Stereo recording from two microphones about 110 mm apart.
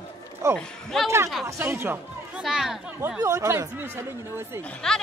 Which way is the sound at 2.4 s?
5° right (ahead or behind).